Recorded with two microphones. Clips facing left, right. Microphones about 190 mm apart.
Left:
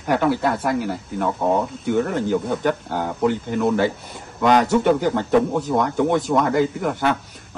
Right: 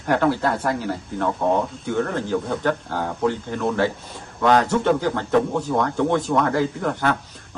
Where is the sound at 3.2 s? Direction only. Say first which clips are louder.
Left 4 dB; 15° left (ahead or behind).